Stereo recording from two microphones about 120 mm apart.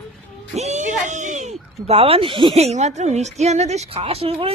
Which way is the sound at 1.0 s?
90° right.